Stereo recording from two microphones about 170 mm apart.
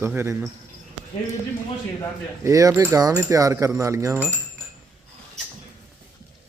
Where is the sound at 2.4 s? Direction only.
20° right (ahead or behind).